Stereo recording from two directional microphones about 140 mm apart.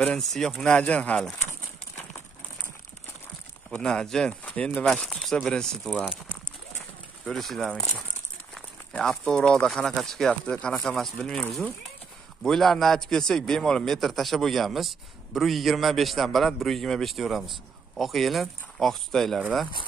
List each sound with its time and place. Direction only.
0.0 s a man's voice: 5° left (ahead or behind)
3.7 s a man's voice: 5° left (ahead or behind)
7.2 s a man's voice: centre (ahead or behind)